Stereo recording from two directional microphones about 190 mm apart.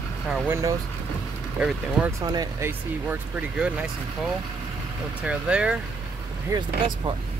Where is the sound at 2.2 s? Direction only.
20° right (ahead or behind).